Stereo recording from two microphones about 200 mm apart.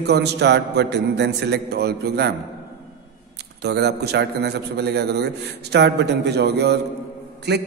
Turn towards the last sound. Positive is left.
turn(degrees=-55)  # may be behind; listen again after turning